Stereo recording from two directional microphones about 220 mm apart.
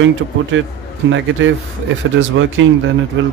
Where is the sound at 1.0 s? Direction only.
55° right (ahead or behind).